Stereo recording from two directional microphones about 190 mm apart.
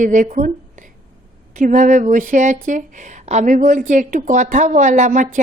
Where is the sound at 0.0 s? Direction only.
45° right (ahead or behind).